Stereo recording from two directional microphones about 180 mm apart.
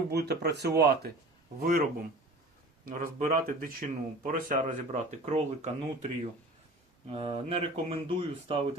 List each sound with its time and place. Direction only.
0.1 s speech: 65° right (ahead or behind); by 6.1 s 40° right (ahead or behind)
7.1 s speech: 35° right (ahead or behind)